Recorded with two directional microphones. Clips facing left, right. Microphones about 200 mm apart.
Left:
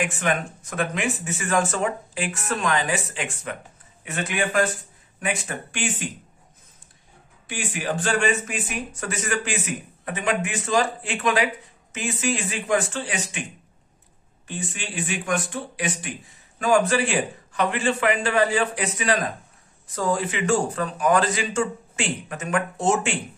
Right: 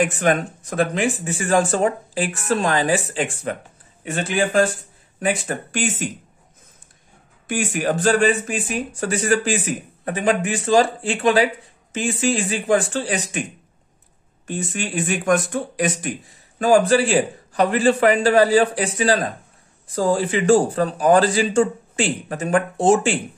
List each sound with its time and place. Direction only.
0.0 s speech: 40° right (ahead or behind)
7.4 s speech: 45° right (ahead or behind)
14.5 s speech: 45° right (ahead or behind)